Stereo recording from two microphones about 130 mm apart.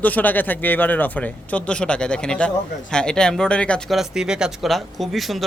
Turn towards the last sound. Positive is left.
turn(degrees=0)  # may be behind; listen again after turning